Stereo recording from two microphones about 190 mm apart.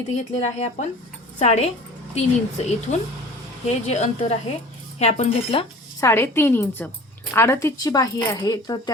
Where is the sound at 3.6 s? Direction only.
35° left (ahead or behind).